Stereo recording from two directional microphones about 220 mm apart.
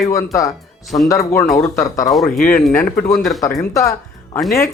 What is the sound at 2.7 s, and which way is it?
Speech, 10° left (ahead or behind).